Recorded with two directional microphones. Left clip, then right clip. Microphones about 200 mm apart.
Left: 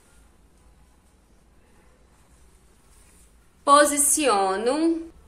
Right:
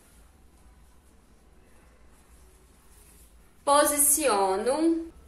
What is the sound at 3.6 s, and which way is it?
A woman's voice, 45° left (ahead or behind).